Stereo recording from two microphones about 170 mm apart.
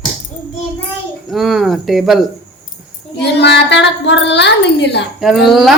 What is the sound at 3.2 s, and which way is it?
Speech, 80° left.